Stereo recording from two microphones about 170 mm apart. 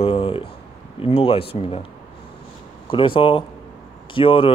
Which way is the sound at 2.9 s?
30° left (ahead or behind).